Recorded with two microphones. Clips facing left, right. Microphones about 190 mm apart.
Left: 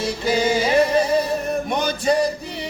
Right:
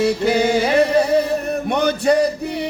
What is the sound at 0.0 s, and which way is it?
Music, 60° right (ahead or behind).